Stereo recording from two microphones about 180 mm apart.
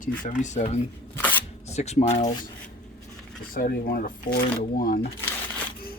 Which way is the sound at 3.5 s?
50° left (ahead or behind).